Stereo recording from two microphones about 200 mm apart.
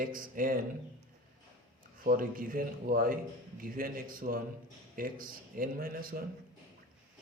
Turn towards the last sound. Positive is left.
turn(degrees=-45)  # may be behind; listen again after turning